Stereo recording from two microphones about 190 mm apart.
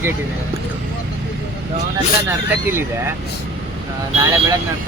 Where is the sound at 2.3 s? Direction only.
10° right (ahead or behind).